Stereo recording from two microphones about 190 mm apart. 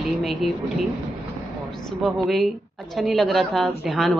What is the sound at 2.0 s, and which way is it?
A woman's voice, centre (ahead or behind).